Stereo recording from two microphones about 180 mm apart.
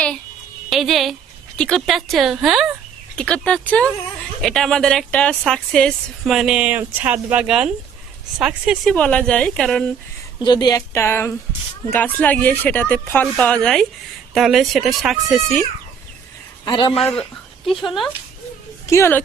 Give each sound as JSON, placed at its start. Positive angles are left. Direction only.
{"t": 0.7, "sound": "speech", "side_deg": 0}
{"t": 10.4, "sound": "speech", "side_deg": 25}
{"t": 16.6, "sound": "speech", "side_deg": 25}
{"t": 17.0, "sound": "speech", "side_deg": 5}
{"t": 18.9, "sound": "speech", "side_deg": 15}